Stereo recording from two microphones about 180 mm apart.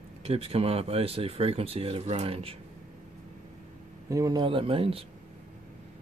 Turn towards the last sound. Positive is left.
turn(degrees=-30)  # may be behind; listen again after turning